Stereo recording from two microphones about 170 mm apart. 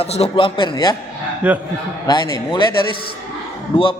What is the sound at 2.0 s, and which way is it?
Speech, 25° left (ahead or behind).